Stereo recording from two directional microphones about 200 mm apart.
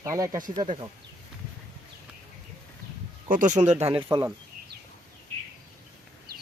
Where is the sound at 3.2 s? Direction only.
40° right (ahead or behind); by 4.3 s 25° right (ahead or behind).